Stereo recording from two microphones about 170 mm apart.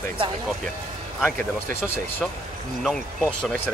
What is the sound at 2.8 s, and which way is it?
Speech, centre (ahead or behind).